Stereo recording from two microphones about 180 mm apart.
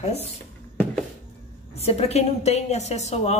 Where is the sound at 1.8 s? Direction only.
35° left (ahead or behind).